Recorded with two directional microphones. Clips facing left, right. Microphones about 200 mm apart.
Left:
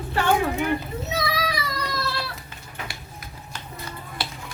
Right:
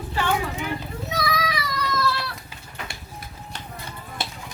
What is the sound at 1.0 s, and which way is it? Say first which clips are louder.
Speech: right 1 dB; 25° left (ahead or behind).